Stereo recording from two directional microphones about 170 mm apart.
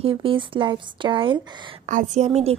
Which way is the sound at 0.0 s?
30° right (ahead or behind).